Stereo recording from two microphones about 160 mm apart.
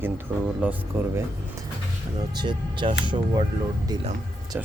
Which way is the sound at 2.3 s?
30° right (ahead or behind).